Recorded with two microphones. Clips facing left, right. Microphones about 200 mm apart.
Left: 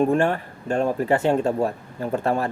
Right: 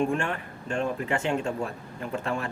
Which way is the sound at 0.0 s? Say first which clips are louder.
Left 7 dB; 40° left (ahead or behind).